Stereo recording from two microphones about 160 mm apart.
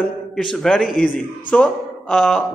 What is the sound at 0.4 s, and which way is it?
A man's voice, 5° left (ahead or behind).